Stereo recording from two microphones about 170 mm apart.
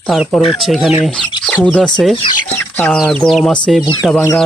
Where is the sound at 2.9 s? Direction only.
Centre (ahead or behind).